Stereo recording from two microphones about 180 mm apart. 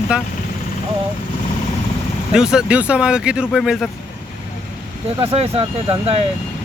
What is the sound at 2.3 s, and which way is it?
Speech, 5° right (ahead or behind).